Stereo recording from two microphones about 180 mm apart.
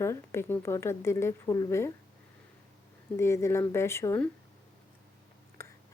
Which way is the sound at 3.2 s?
15° left (ahead or behind).